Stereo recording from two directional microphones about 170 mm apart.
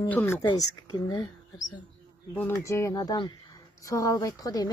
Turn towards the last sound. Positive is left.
turn(degrees=20)  # may be behind; listen again after turning